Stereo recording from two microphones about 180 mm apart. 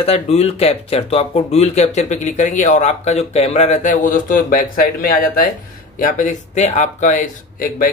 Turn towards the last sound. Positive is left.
turn(degrees=50)  # may be behind; listen again after turning